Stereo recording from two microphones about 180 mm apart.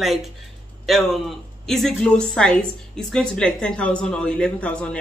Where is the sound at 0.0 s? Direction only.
Centre (ahead or behind).